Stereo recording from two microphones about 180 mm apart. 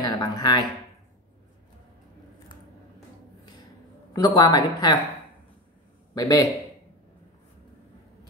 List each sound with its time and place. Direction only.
0.0 s speech: 20° left (ahead or behind)
4.4 s a woman's voice: 20° left (ahead or behind)
6.1 s a woman's voice: 20° left (ahead or behind)